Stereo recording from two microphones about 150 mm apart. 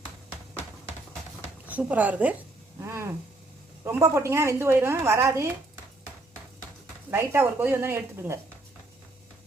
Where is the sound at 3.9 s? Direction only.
20° right (ahead or behind).